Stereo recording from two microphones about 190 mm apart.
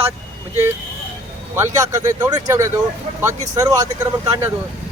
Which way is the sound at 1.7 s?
15° right (ahead or behind).